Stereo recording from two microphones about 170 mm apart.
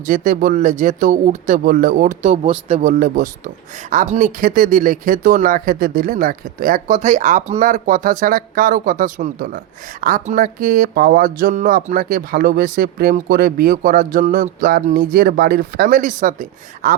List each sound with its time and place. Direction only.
0.0 s speech: 50° right (ahead or behind)
4.4 s speech: 55° right (ahead or behind)